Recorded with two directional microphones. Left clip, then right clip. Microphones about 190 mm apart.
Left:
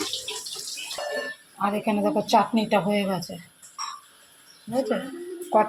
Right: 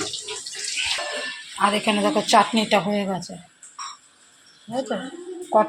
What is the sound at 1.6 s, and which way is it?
Speech, centre (ahead or behind).